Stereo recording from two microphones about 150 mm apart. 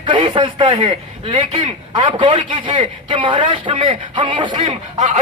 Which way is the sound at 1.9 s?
35° right (ahead or behind).